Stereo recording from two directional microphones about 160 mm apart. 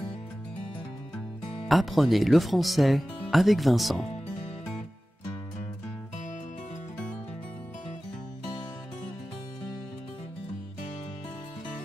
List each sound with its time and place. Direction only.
1.7 s speech: centre (ahead or behind)